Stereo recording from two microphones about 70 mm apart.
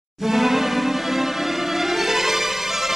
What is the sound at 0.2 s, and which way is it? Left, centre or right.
Music, centre.